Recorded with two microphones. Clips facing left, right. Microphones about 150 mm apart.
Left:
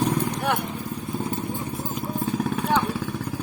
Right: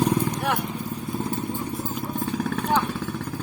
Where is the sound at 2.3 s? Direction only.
10° left (ahead or behind).